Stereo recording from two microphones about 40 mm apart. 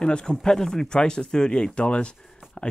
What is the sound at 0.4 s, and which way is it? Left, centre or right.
Speech, centre.